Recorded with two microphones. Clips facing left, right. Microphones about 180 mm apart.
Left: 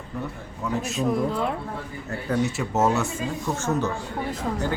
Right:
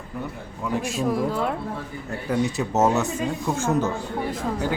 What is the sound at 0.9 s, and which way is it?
Speech, 5° right (ahead or behind).